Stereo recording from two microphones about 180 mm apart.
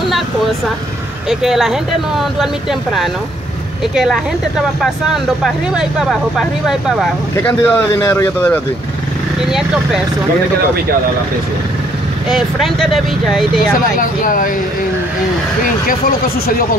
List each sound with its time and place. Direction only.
1.3 s speech: centre (ahead or behind)
3.9 s speech: centre (ahead or behind)
7.3 s speech: 10° left (ahead or behind)
9.5 s speech: 5° right (ahead or behind)
12.3 s speech: centre (ahead or behind)
13.9 s speech: 50° left (ahead or behind)